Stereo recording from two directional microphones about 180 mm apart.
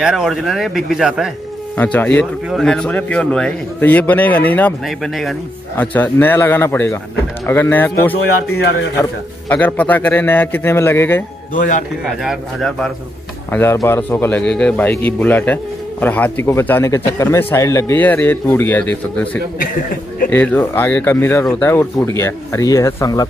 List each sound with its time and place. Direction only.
0.0 s speech: centre (ahead or behind)
1.8 s a man's voice: 10° left (ahead or behind)
9.5 s a man's voice: 10° left (ahead or behind)
12.0 s speech: centre (ahead or behind)
13.5 s a man's voice: 15° left (ahead or behind)